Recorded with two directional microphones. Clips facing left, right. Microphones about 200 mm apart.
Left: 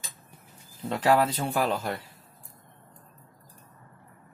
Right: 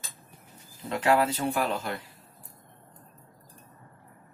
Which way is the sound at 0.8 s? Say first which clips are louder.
Left 1 dB; 35° left (ahead or behind).